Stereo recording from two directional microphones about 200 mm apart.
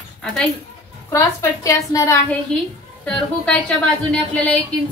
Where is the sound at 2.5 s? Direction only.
5° left (ahead or behind).